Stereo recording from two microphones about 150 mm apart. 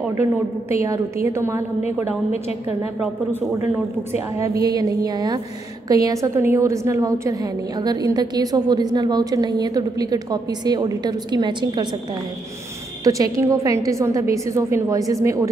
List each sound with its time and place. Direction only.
0.0 s a woman's voice: 15° right (ahead or behind)
4.6 s a woman's voice: 25° right (ahead or behind)
13.0 s a woman's voice: 20° right (ahead or behind)